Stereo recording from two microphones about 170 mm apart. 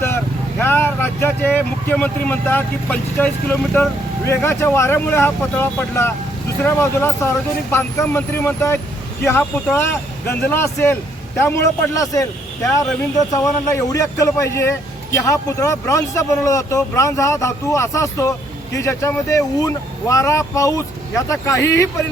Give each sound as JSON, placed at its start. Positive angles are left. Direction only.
{"t": 0.6, "sound": "speech", "side_deg": 10}